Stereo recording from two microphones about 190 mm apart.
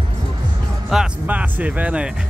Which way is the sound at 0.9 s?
5° right (ahead or behind).